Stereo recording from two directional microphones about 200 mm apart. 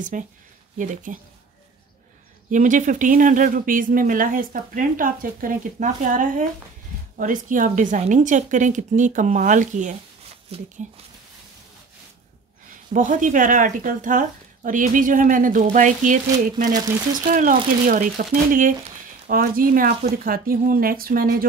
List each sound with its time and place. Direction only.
0.1 s speech: 40° right (ahead or behind)
2.5 s speech: 40° right (ahead or behind)
12.9 s speech: 40° right (ahead or behind)